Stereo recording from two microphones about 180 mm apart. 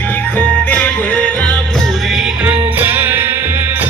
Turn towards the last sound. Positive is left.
turn(degrees=-10)  # may be behind; listen again after turning